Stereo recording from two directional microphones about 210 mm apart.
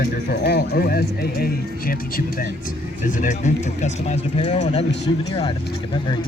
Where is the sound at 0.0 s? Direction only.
50° left (ahead or behind); by 4.8 s 35° left (ahead or behind).